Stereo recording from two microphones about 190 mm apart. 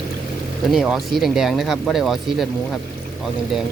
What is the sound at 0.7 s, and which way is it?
Speech, centre (ahead or behind).